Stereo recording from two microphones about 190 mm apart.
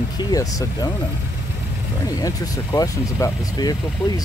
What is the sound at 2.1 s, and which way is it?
Speech, 20° left (ahead or behind).